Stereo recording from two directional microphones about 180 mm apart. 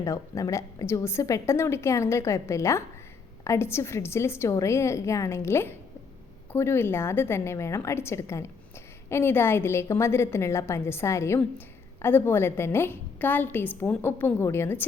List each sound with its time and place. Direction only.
0.0 s a woman's voice: 15° left (ahead or behind)